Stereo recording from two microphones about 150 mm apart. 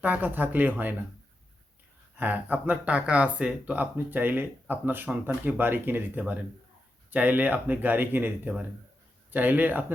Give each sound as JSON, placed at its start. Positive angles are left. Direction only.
{"t": 0.0, "sound": "speech", "side_deg": -10}
{"t": 2.1, "sound": "speech", "side_deg": -10}